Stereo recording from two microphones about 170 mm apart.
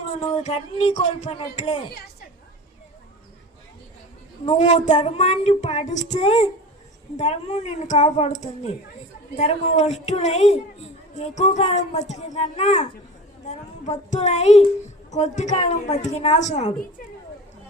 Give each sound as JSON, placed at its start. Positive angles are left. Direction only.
{"t": 0.4, "sound": "speech", "side_deg": 40}
{"t": 4.5, "sound": "female singing", "side_deg": 45}
{"t": 7.2, "sound": "speech", "side_deg": 40}
{"t": 9.3, "sound": "female singing", "side_deg": 40}
{"t": 11.2, "sound": "speech", "side_deg": 45}
{"t": 15.1, "sound": "female singing", "side_deg": 45}